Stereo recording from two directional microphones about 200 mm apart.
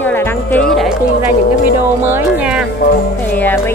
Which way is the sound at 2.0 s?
10° right (ahead or behind).